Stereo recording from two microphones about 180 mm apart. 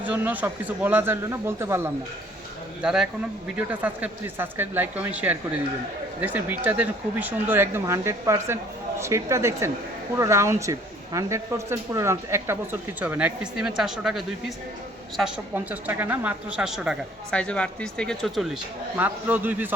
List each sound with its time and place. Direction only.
0.0 s speech: 10° right (ahead or behind)
2.8 s a woman's voice: 5° right (ahead or behind)
18.9 s speech: 10° right (ahead or behind)